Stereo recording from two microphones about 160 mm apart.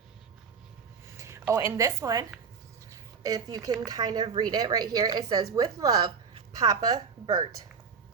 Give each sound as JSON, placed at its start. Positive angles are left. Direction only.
{"t": 1.0, "sound": "speech", "side_deg": -15}